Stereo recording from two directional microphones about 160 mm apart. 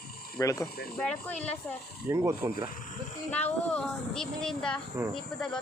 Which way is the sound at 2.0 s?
15° right (ahead or behind).